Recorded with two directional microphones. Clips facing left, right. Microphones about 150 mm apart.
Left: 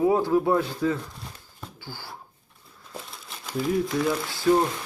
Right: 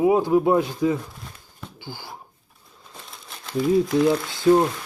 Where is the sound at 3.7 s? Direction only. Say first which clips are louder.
Right 6 dB; 20° right (ahead or behind).